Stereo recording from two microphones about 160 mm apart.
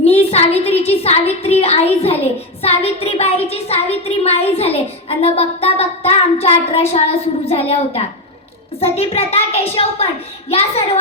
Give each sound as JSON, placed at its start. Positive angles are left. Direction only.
{"t": 0.0, "sound": "speech", "side_deg": 40}